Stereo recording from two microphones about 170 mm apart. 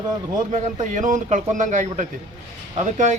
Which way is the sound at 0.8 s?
45° right (ahead or behind).